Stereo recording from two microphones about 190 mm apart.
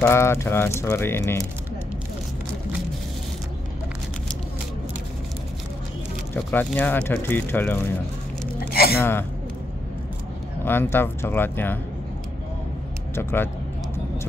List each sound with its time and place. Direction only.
0.0 s speech: 15° left (ahead or behind)
6.3 s speech: 10° left (ahead or behind)
8.5 s gasp: 50° left (ahead or behind)
8.9 s speech: 10° left (ahead or behind)
10.6 s speech: 10° left (ahead or behind)
13.1 s speech: 10° left (ahead or behind)